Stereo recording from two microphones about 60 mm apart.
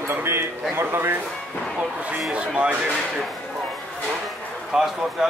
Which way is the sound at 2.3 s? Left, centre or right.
Right.